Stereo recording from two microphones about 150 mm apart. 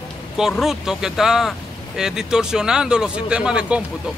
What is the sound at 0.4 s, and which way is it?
A man's voice, centre (ahead or behind).